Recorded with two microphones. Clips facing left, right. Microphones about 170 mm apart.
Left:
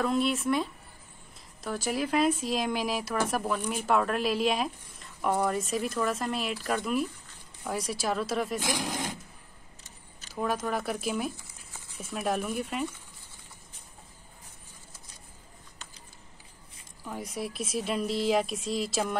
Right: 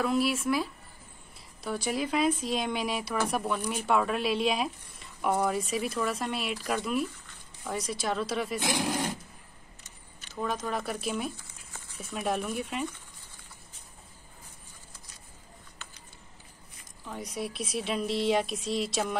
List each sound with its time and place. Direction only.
0.0 s speech: 5° right (ahead or behind)
10.3 s speech: 5° left (ahead or behind)
17.0 s speech: 5° left (ahead or behind)